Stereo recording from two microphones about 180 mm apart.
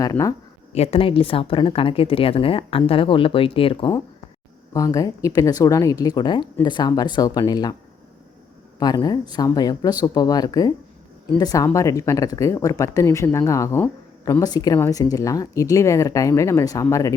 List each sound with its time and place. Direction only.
0.0 s speech: 20° left (ahead or behind)
0.7 s a woman's voice: 35° left (ahead or behind)
4.7 s speech: 20° left (ahead or behind)
8.8 s speech: 20° left (ahead or behind)
14.4 s speech: 20° left (ahead or behind)